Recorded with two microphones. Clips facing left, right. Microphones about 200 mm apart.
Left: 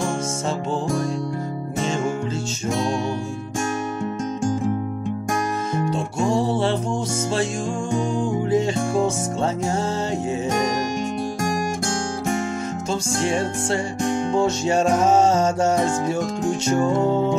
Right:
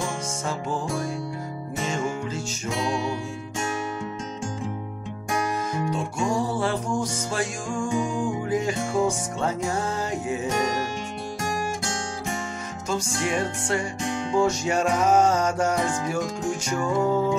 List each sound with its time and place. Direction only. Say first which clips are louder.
6.3 s music: left 5 dB; 25° left (ahead or behind)
8.5 s music: left 5 dB; 25° left (ahead or behind)
12.9 s music: left 3 dB; 25° left (ahead or behind)